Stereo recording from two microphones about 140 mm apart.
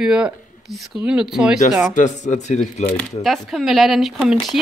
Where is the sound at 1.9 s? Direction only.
60° left (ahead or behind).